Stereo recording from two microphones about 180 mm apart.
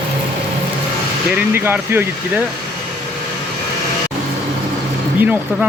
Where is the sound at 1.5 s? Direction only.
10° right (ahead or behind).